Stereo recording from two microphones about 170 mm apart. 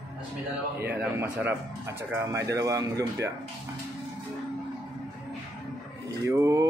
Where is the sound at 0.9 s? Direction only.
10° right (ahead or behind).